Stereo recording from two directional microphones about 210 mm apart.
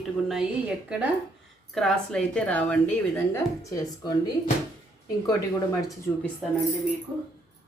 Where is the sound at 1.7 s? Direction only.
Centre (ahead or behind).